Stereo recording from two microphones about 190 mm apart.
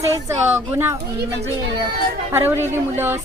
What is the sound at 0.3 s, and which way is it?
Speech, 10° right (ahead or behind).